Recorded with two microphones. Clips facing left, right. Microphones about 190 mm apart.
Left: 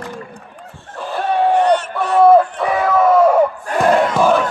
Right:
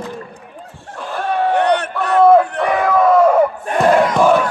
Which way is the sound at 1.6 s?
60° right (ahead or behind).